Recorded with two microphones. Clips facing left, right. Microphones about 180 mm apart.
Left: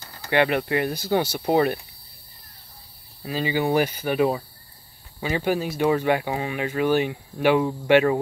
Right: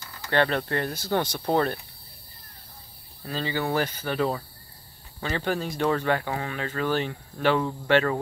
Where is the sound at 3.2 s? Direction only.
10° left (ahead or behind).